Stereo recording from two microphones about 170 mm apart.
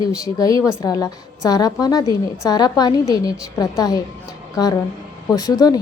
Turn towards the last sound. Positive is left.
turn(degrees=20)  # may be behind; listen again after turning